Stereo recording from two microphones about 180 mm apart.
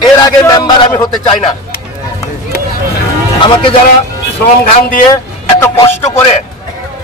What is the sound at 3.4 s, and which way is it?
Speech, 25° left (ahead or behind).